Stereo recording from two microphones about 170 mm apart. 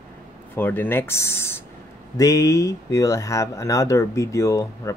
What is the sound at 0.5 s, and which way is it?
Speech, 10° left (ahead or behind).